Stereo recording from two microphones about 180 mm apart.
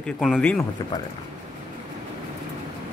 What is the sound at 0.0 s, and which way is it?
Speech, 5° left (ahead or behind).